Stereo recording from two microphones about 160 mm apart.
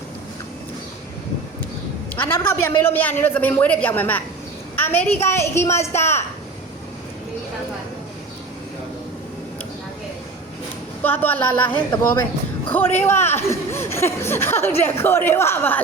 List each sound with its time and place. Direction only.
2.1 s speech: 10° left (ahead or behind)
11.0 s speech: 10° left (ahead or behind)